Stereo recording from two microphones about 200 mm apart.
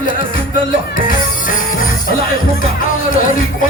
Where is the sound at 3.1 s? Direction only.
40° left (ahead or behind).